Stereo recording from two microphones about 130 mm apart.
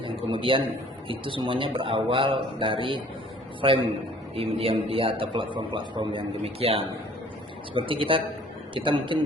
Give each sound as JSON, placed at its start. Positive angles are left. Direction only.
{"t": 0.5, "sound": "a man's voice", "side_deg": -40}
{"t": 6.3, "sound": "a man's voice", "side_deg": -50}